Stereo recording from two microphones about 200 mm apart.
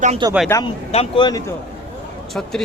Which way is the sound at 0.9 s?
20° left (ahead or behind).